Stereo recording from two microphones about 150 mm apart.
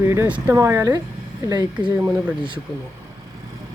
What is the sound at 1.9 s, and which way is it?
Speech, 15° right (ahead or behind).